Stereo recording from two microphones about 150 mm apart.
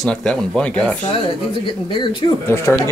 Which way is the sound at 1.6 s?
30° left (ahead or behind).